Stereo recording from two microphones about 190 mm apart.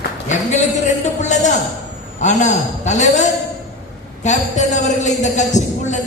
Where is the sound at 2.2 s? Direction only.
40° left (ahead or behind).